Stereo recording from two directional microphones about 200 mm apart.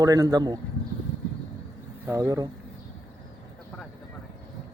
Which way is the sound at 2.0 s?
15° right (ahead or behind).